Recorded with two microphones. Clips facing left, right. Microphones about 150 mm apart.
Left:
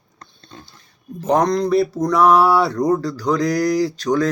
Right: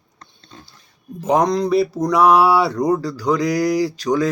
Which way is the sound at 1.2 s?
5° right (ahead or behind).